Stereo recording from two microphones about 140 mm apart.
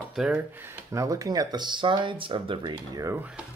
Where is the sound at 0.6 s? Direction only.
20° right (ahead or behind).